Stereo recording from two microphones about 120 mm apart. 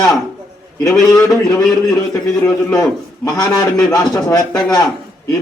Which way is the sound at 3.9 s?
30° left (ahead or behind).